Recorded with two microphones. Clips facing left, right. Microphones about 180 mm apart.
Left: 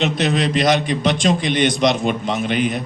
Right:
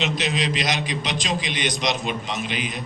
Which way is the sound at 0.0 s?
55° left (ahead or behind).